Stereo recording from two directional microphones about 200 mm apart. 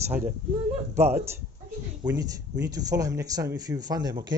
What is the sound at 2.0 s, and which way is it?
Speech, 15° right (ahead or behind).